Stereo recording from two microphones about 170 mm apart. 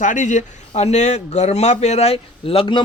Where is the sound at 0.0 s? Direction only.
50° left (ahead or behind).